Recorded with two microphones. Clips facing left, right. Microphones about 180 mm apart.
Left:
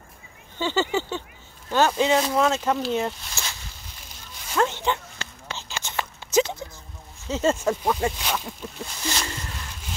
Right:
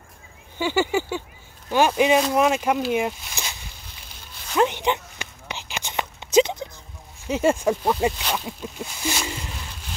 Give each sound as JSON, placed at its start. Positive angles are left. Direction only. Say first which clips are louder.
{"t": 0.6, "sound": "speech", "louder": "right 2 dB", "side_deg": -10}
{"t": 4.6, "sound": "a sound", "louder": "right 3 dB", "side_deg": -15}
{"t": 7.2, "sound": "speech", "louder": "right 2 dB", "side_deg": -15}